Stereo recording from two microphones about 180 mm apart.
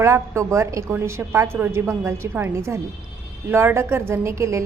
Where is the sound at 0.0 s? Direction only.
15° right (ahead or behind).